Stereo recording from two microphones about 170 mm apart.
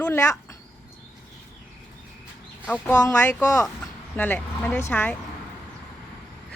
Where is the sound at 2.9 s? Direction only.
15° left (ahead or behind).